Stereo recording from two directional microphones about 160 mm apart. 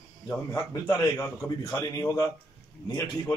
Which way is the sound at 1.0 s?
20° left (ahead or behind).